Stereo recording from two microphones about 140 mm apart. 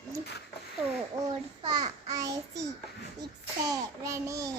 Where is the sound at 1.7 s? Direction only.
25° right (ahead or behind).